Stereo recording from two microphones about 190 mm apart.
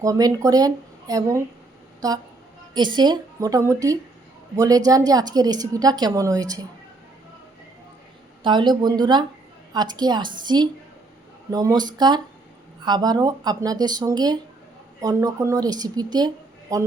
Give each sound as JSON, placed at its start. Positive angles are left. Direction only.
{"t": 0.0, "sound": "a woman's voice", "side_deg": -20}
{"t": 8.4, "sound": "a woman's voice", "side_deg": -25}